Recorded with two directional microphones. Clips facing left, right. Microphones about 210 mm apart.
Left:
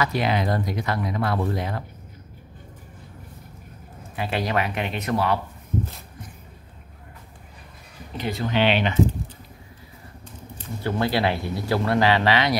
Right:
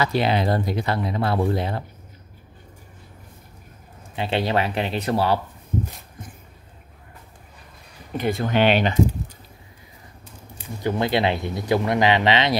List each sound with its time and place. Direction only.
0.0 s speech: 30° right (ahead or behind)
4.1 s speech: 25° right (ahead or behind)
8.2 s speech: 50° right (ahead or behind)
10.6 s speech: 15° right (ahead or behind)